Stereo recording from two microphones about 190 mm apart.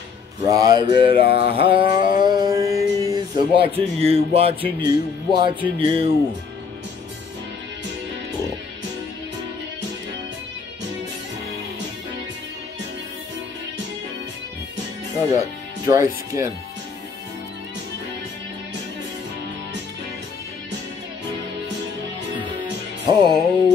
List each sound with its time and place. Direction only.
0.5 s speech: 20° right (ahead or behind)
1.2 s mantra: 60° left (ahead or behind)
1.5 s speech: 30° right (ahead or behind)
2.0 s a sound: 50° left (ahead or behind)
2.2 s a sound: 20° right (ahead or behind)
4.8 s speech: 25° right (ahead or behind)
15.8 s speech: 15° right (ahead or behind)
23.0 s speech: 20° right (ahead or behind)